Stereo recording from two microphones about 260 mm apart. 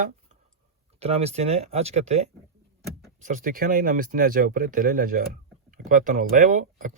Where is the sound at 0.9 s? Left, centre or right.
Right.